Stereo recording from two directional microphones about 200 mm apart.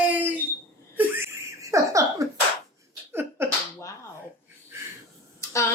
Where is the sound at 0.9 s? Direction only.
10° right (ahead or behind).